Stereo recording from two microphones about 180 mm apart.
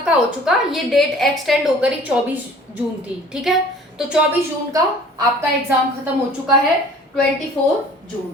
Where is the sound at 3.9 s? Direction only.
5° right (ahead or behind).